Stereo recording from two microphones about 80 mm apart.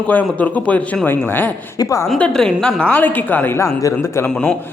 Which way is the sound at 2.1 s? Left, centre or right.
Centre.